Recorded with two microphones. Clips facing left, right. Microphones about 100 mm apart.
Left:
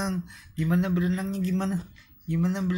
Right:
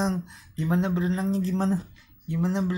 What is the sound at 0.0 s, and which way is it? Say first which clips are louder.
Speech: right 3 dB; 30° right (ahead or behind).